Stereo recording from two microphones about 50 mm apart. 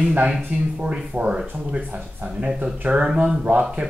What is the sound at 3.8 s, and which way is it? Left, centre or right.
Speech, right.